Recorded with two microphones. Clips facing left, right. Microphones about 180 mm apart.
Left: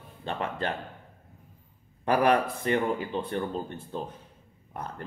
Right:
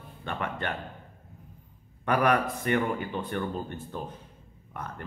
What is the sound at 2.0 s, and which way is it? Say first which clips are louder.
Speech: left 2 dB; 30° left (ahead or behind).